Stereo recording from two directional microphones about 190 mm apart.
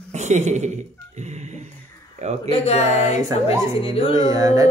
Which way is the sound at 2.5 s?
35° left (ahead or behind).